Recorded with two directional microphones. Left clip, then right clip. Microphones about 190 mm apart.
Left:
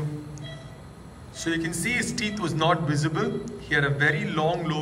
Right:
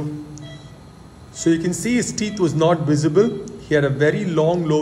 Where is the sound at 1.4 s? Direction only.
35° right (ahead or behind).